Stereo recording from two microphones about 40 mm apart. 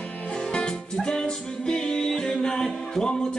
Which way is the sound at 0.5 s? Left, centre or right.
Left.